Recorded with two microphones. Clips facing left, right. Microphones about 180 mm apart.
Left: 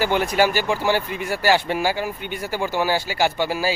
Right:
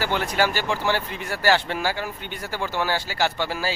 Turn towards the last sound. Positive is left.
turn(degrees=10)  # may be behind; listen again after turning